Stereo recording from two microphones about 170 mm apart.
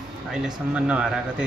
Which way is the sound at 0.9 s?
5° right (ahead or behind).